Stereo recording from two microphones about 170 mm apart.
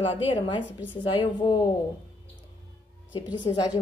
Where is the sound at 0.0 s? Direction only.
30° left (ahead or behind).